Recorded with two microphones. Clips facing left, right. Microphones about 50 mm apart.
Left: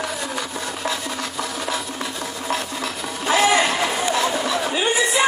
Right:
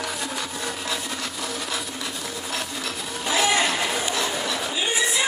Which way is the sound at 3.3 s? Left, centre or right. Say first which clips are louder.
Left 5 dB; left.